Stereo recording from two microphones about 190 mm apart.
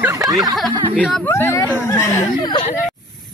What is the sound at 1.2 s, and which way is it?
Speech, 15° left (ahead or behind).